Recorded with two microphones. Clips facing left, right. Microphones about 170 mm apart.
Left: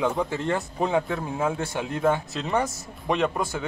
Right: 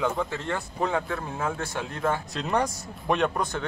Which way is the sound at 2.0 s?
5° left (ahead or behind).